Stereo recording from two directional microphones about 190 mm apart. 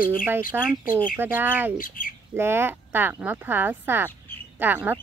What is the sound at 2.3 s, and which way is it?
Speech, 10° right (ahead or behind).